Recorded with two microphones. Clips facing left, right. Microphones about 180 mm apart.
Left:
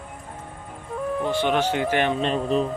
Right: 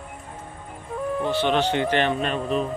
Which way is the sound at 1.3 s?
15° left (ahead or behind).